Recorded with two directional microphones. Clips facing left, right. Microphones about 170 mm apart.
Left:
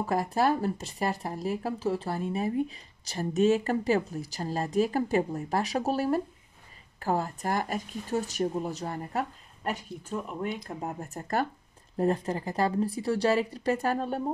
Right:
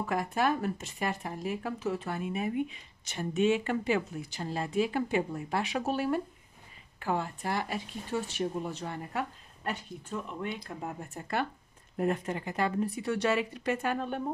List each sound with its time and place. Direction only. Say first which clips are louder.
0.0 s speech: left 3 dB; 35° left (ahead or behind)
10.8 s speech: left 3 dB; 40° left (ahead or behind)